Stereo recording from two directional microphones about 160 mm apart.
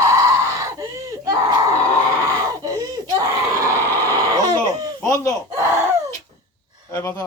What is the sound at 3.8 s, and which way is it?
Vehicle, 15° left (ahead or behind).